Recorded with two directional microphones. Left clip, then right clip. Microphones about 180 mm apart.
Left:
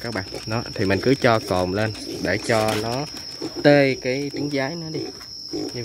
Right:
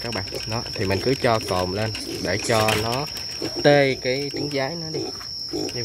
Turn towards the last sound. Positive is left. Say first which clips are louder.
# even
turn(degrees=55)  # may be behind; listen again after turning